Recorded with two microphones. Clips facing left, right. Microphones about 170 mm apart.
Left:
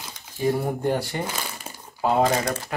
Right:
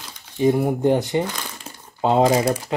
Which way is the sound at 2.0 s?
25° right (ahead or behind).